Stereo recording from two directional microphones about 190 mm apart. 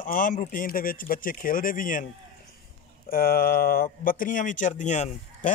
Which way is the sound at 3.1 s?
50° left (ahead or behind).